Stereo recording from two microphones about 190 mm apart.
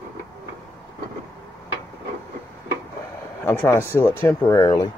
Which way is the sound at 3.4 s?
15° left (ahead or behind).